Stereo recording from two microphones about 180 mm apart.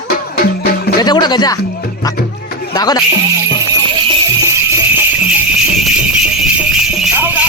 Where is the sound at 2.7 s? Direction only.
20° left (ahead or behind).